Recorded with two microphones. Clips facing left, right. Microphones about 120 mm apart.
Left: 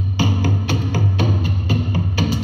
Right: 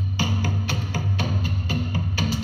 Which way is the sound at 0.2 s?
15° left (ahead or behind).